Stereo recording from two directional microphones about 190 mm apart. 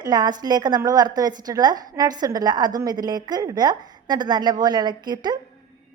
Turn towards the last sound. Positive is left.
turn(degrees=-20)  # may be behind; listen again after turning